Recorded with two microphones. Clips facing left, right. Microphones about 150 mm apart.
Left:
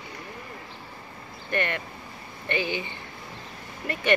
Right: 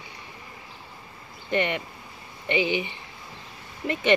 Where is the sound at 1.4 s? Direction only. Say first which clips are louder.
Right 3 dB; 20° right (ahead or behind).